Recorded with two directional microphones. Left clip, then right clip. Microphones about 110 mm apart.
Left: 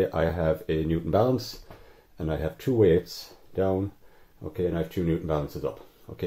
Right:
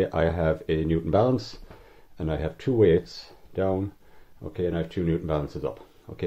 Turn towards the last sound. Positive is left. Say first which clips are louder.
# right 1 dB
turn(degrees=-30)  # may be behind; listen again after turning